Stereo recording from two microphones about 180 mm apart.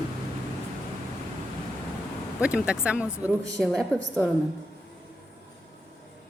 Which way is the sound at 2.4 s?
5° right (ahead or behind).